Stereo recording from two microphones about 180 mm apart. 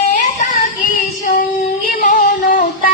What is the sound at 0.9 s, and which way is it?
Child singing, 50° left (ahead or behind).